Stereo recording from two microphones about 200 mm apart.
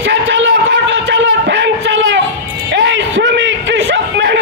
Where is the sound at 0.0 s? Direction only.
65° right (ahead or behind).